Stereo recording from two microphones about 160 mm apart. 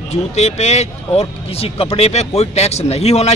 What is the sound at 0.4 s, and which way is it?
Speech, 45° left (ahead or behind).